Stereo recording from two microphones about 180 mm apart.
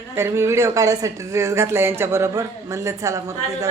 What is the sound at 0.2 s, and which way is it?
Speech, 15° right (ahead or behind).